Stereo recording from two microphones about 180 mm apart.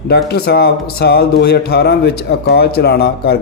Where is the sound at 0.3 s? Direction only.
60° left (ahead or behind).